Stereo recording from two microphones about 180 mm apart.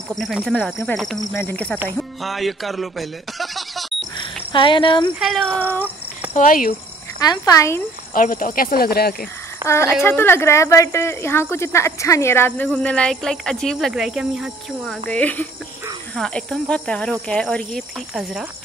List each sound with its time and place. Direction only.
0.1 s speech: centre (ahead or behind)
1.3 s speech: 10° left (ahead or behind)
4.2 s a sound: 30° left (ahead or behind)
5.2 s speech: centre (ahead or behind)
6.3 s speech: 50° left (ahead or behind)
7.2 s speech: 20° left (ahead or behind)
8.1 s speech: 50° left (ahead or behind)
9.7 s speech: 15° left (ahead or behind); by 18.4 s centre (ahead or behind)